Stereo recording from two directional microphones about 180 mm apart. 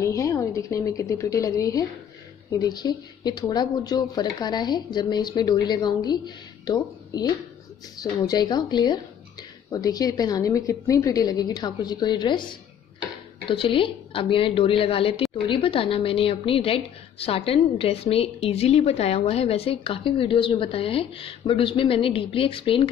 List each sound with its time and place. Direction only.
0.0 s a woman's voice: 15° left (ahead or behind)